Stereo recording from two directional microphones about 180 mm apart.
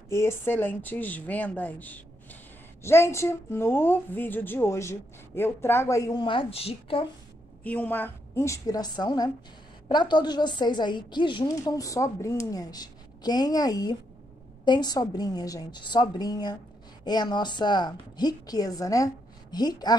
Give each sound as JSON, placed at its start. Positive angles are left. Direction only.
{"t": 0.1, "sound": "a woman's voice", "side_deg": 15}
{"t": 7.6, "sound": "a woman's voice", "side_deg": 10}